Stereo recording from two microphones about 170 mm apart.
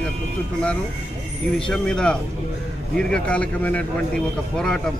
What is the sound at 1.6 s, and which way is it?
A man's voice, 5° left (ahead or behind).